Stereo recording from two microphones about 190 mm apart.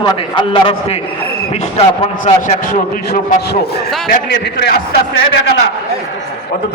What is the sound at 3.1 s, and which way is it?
A man's voice, 55° left (ahead or behind).